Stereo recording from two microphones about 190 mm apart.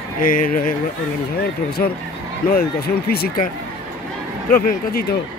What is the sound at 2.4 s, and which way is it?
Speech, 55° left (ahead or behind).